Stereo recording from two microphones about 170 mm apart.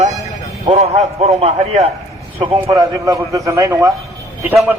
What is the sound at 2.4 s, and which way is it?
A man's voice, 20° right (ahead or behind).